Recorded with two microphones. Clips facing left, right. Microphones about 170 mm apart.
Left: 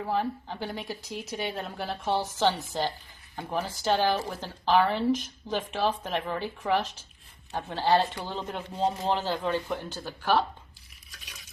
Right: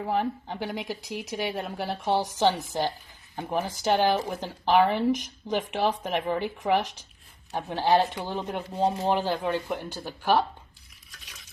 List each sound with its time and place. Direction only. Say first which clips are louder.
0.0 s speech: right 2 dB; 15° right (ahead or behind)